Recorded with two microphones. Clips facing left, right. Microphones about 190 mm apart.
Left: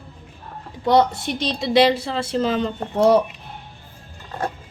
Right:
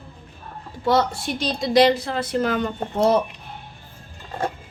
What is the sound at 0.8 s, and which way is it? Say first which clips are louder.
A woman's voice: left 3 dB; 20° left (ahead or behind).